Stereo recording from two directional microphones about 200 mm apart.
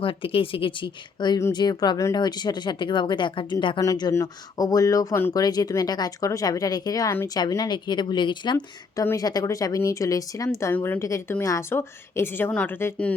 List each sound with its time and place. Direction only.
0.0 s a woman's voice: 25° left (ahead or behind); by 13.1 s 10° left (ahead or behind)